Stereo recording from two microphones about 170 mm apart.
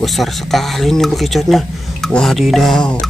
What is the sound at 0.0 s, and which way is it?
Speech, centre (ahead or behind).